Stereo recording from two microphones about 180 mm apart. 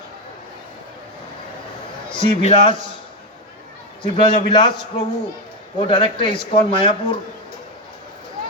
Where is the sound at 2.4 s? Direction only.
30° left (ahead or behind).